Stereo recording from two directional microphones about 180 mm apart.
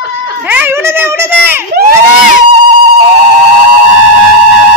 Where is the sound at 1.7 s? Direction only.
60° right (ahead or behind).